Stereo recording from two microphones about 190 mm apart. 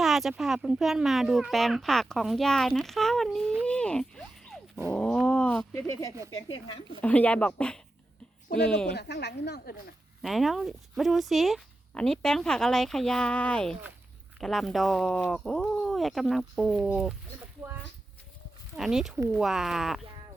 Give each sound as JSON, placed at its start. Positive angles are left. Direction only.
{"t": 0.0, "sound": "speech", "side_deg": 0}
{"t": 3.6, "sound": "a sound", "side_deg": 5}
{"t": 4.9, "sound": "speech", "side_deg": 5}
{"t": 6.3, "sound": "speech", "side_deg": 25}
{"t": 7.0, "sound": "speech", "side_deg": 5}
{"t": 9.0, "sound": "a woman's voice", "side_deg": 60}
{"t": 10.2, "sound": "speech", "side_deg": 0}
{"t": 18.8, "sound": "speech", "side_deg": 0}